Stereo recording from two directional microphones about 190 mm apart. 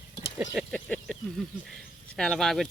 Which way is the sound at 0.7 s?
5° left (ahead or behind).